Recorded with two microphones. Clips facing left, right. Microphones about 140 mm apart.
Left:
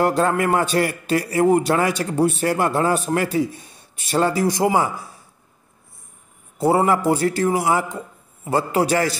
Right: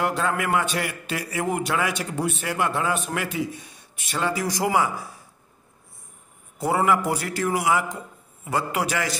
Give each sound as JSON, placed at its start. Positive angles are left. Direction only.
{"t": 0.0, "sound": "a man's voice", "side_deg": 40}
{"t": 6.6, "sound": "a man's voice", "side_deg": 30}